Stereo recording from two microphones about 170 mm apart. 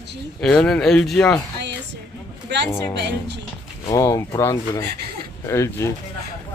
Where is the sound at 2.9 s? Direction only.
90° right.